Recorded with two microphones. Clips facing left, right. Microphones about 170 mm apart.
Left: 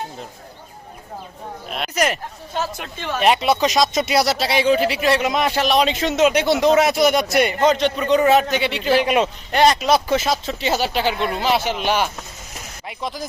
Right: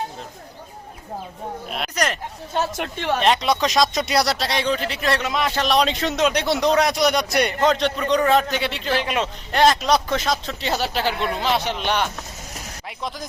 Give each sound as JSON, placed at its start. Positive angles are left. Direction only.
{"t": 1.6, "sound": "a man's voice", "side_deg": 0}
{"t": 3.2, "sound": "a man's voice", "side_deg": 10}
{"t": 5.2, "sound": "a man's voice", "side_deg": 15}
{"t": 5.5, "sound": "a man's voice", "side_deg": 0}
{"t": 9.5, "sound": "a man's voice", "side_deg": 0}